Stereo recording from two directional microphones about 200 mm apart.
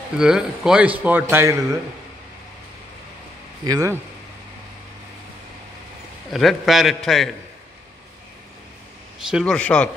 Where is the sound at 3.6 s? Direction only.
15° right (ahead or behind).